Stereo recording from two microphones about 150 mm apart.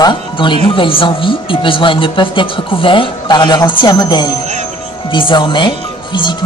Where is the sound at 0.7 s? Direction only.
35° left (ahead or behind).